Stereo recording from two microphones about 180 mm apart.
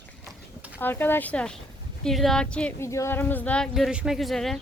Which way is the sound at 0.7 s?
10° left (ahead or behind).